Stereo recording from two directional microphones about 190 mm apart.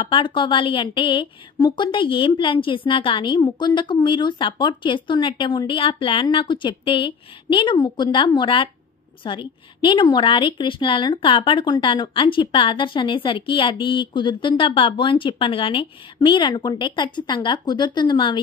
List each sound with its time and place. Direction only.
0.0 s a woman's voice: 25° left (ahead or behind)